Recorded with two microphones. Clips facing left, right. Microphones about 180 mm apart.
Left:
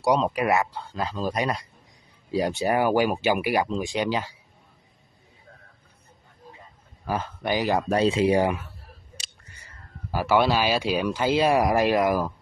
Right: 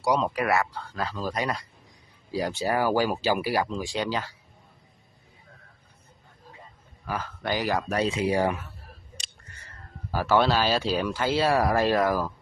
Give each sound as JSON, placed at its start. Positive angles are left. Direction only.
{"t": 0.0, "sound": "speech", "side_deg": 20}
{"t": 7.1, "sound": "speech", "side_deg": 25}
{"t": 10.1, "sound": "speech", "side_deg": 10}